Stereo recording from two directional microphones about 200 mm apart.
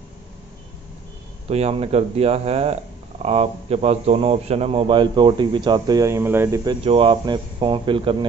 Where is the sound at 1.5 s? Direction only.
30° right (ahead or behind).